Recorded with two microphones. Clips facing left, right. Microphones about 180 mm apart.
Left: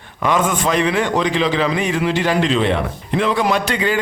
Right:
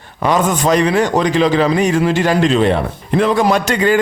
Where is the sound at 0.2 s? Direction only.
35° right (ahead or behind).